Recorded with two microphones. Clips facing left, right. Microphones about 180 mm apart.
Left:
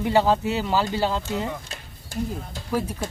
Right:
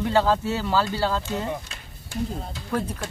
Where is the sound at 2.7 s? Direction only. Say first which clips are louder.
Left 1 dB; 10° left (ahead or behind).